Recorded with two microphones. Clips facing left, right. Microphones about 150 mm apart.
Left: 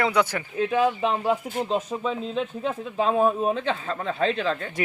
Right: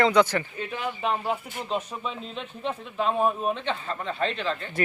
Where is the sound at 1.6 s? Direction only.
40° left (ahead or behind).